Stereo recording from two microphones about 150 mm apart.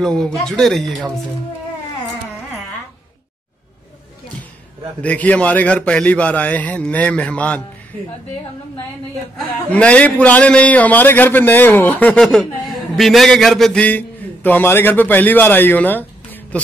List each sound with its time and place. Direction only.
0.0 s speech: 5° left (ahead or behind)
5.0 s a man's voice: 10° left (ahead or behind)
9.7 s a man's voice: 10° left (ahead or behind)